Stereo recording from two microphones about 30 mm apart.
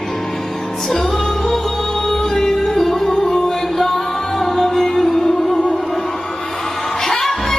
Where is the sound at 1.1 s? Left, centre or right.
Left.